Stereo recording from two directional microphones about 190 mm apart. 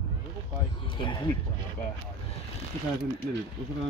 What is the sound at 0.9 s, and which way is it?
Speech, 25° left (ahead or behind).